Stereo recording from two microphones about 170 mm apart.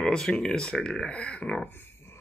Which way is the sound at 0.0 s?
5° left (ahead or behind).